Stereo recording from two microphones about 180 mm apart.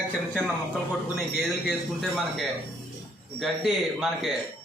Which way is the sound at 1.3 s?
Centre (ahead or behind).